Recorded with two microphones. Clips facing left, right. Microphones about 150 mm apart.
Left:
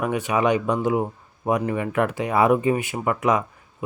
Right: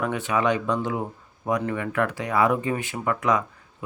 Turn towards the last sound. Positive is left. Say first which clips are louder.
# left 2 dB
turn(degrees=20)  # may be behind; listen again after turning